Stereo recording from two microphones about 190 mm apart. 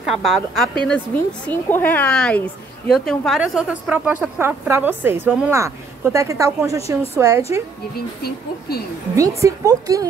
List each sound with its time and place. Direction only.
0.0 s a woman's voice: centre (ahead or behind)
8.2 s speech: 55° left (ahead or behind)
9.1 s a woman's voice: 15° right (ahead or behind)